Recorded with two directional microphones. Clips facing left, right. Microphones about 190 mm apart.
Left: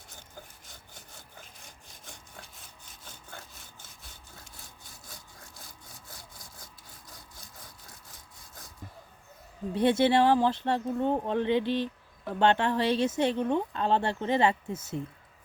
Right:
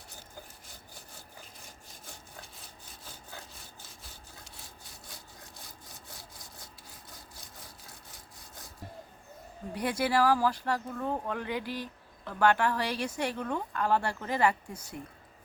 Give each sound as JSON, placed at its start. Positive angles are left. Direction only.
{"t": 9.7, "sound": "speech", "side_deg": 25}